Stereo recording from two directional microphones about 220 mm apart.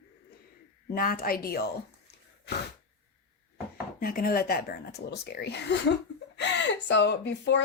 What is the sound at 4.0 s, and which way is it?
Speech, 40° left (ahead or behind).